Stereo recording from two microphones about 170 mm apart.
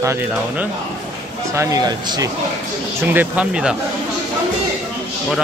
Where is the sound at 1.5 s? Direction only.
20° right (ahead or behind).